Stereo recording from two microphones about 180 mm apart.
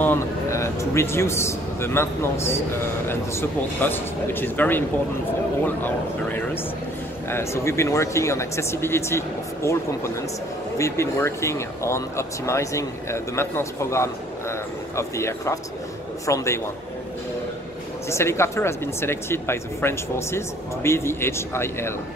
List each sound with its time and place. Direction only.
0.0 s a man's voice: 15° left (ahead or behind)
5.9 s speech: 10° left (ahead or behind)
18.1 s speech: 15° left (ahead or behind)